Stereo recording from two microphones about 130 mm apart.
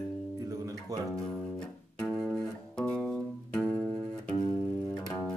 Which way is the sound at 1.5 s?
5° left (ahead or behind).